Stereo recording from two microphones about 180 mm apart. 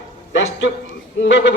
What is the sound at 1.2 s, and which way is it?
Speech, 85° left.